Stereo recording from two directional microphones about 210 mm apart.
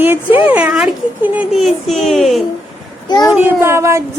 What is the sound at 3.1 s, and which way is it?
Speech, 20° left (ahead or behind).